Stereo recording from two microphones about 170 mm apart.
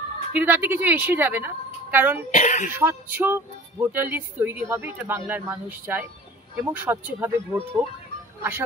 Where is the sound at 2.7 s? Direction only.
10° right (ahead or behind).